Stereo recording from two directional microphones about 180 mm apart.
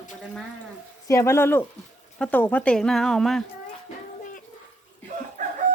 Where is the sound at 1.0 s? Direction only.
15° left (ahead or behind).